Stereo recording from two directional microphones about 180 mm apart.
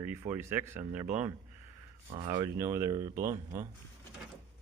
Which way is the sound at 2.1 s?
40° right (ahead or behind).